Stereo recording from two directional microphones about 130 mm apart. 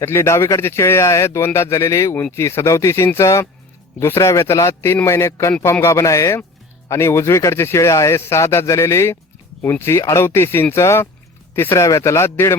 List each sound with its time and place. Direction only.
0.0 s speech: 20° left (ahead or behind)